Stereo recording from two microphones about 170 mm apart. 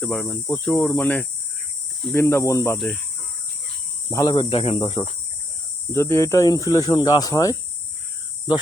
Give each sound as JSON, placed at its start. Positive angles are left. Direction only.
{"t": 0.0, "sound": "cricket", "side_deg": 5}
{"t": 2.1, "sound": "speech", "side_deg": 15}
{"t": 2.7, "sound": "cricket", "side_deg": 0}
{"t": 4.1, "sound": "speech", "side_deg": 20}
{"t": 4.4, "sound": "speech", "side_deg": 35}
{"t": 5.9, "sound": "speech", "side_deg": 15}